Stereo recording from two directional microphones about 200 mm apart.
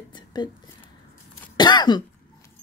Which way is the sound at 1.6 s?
20° left (ahead or behind).